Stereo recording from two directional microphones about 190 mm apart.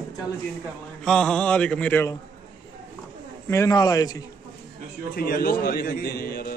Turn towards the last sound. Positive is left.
turn(degrees=50)  # may be behind; listen again after turning